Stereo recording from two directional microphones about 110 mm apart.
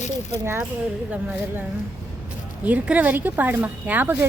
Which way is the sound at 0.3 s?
25° right (ahead or behind).